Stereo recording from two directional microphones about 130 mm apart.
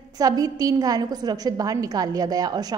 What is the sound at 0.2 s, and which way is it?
A woman's voice, 30° right (ahead or behind).